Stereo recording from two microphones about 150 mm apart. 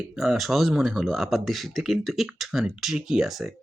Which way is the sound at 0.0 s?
Centre (ahead or behind).